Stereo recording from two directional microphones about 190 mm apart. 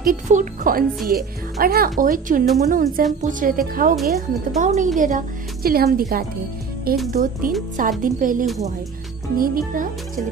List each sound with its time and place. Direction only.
0.0 s a woman's voice: 45° right (ahead or behind)
3.9 s speech: centre (ahead or behind)
4.6 s speech: 40° right (ahead or behind)